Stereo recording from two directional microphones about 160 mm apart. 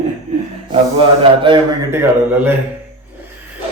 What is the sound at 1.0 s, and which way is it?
Speech, 30° right (ahead or behind).